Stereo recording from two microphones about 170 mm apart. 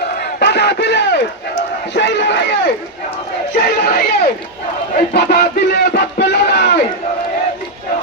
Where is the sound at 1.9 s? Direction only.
90° left.